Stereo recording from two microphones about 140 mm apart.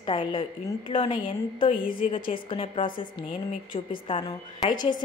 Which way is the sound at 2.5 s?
40° left (ahead or behind).